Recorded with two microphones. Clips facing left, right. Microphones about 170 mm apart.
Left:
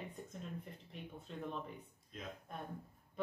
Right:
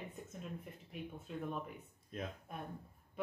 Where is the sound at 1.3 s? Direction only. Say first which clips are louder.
Right 3 dB; 5° right (ahead or behind).